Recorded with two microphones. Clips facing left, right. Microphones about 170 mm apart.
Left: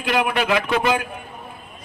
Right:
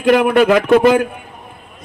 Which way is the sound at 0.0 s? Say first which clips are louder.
Right 10 dB; 50° right (ahead or behind).